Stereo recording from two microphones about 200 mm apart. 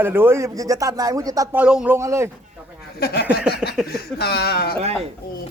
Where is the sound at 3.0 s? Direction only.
55° left (ahead or behind).